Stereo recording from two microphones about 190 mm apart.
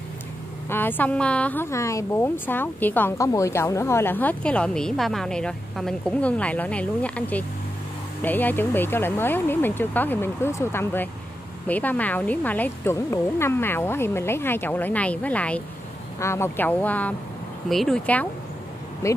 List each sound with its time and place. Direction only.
0.7 s a woman's voice: 10° left (ahead or behind)
19.0 s a woman's voice: 15° left (ahead or behind)